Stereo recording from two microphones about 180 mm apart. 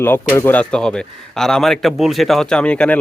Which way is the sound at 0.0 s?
10° left (ahead or behind).